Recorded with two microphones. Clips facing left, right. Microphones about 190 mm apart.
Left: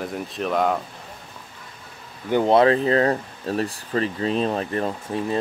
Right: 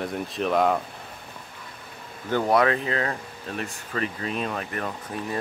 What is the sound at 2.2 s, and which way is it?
Speech, 20° left (ahead or behind).